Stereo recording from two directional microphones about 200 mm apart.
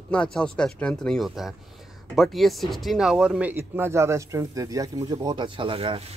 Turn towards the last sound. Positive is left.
turn(degrees=-25)  # may be behind; listen again after turning